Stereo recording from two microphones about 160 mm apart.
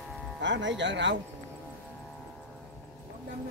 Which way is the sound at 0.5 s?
90° right.